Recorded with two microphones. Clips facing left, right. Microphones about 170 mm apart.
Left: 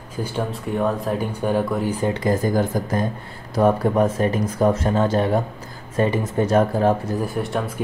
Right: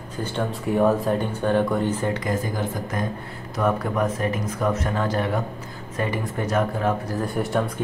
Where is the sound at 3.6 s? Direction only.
30° left (ahead or behind).